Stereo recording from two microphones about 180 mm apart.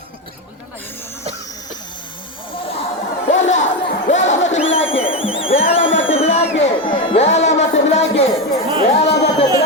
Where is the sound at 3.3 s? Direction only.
40° left (ahead or behind).